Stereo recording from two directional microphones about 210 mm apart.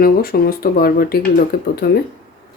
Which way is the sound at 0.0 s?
45° left (ahead or behind).